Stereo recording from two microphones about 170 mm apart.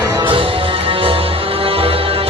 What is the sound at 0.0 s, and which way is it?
Music, 20° right (ahead or behind).